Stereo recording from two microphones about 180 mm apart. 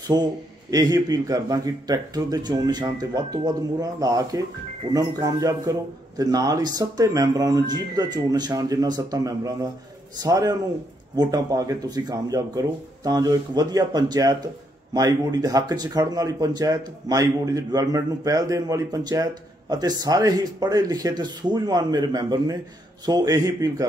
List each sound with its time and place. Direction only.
0.1 s speech: 20° right (ahead or behind)